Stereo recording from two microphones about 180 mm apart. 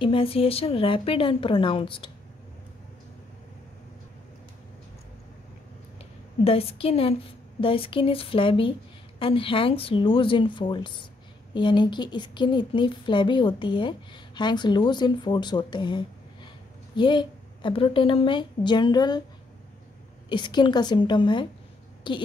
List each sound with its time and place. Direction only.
0.0 s a woman's voice: 30° left (ahead or behind)
6.4 s a woman's voice: 35° left (ahead or behind)
20.2 s a woman's voice: 25° left (ahead or behind)